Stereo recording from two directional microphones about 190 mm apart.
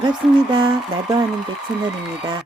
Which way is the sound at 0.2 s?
Centre (ahead or behind).